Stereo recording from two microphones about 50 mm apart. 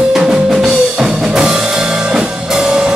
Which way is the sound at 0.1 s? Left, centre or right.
Centre.